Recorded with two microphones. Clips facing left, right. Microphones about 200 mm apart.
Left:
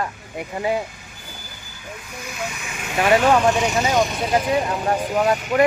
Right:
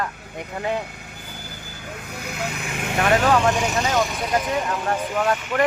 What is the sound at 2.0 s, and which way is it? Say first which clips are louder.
Vehicle: right 1 dB; 60° right (ahead or behind).